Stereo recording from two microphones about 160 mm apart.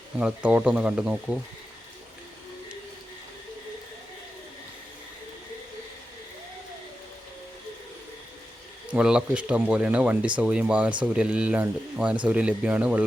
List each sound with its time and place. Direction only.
0.2 s speech: 10° right (ahead or behind)
8.9 s speech: 5° right (ahead or behind)